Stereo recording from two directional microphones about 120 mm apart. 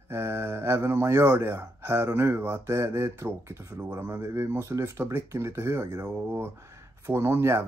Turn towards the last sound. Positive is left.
turn(degrees=-20)  # may be behind; listen again after turning